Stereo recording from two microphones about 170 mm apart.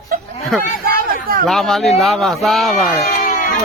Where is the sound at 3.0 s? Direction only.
45° left (ahead or behind).